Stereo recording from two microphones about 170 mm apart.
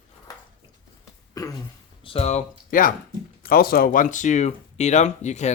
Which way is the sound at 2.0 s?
35° left (ahead or behind).